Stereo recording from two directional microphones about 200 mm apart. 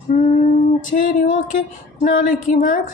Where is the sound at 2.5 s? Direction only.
40° left (ahead or behind).